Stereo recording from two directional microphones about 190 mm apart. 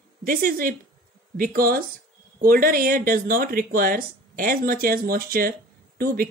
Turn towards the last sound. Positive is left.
turn(degrees=-50)  # may be behind; listen again after turning